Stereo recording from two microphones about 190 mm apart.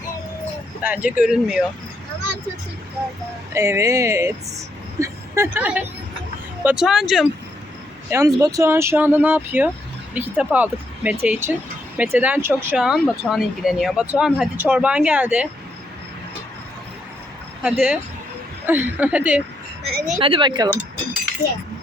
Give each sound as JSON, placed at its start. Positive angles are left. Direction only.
{"t": 0.8, "sound": "speech", "side_deg": -5}
{"t": 3.5, "sound": "speech", "side_deg": -15}
{"t": 8.1, "sound": "speech", "side_deg": -15}
{"t": 17.6, "sound": "speech", "side_deg": -5}
{"t": 19.8, "sound": "speech", "side_deg": -55}
{"t": 20.1, "sound": "speech", "side_deg": -30}